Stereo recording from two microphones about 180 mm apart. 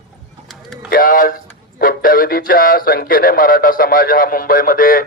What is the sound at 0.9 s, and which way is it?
Speech, 50° left (ahead or behind).